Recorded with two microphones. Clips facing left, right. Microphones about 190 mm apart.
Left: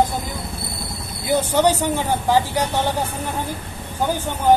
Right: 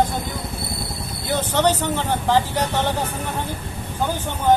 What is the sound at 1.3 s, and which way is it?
Speech, 10° left (ahead or behind).